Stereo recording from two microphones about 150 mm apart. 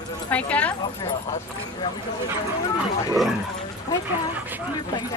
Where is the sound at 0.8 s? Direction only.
35° left (ahead or behind).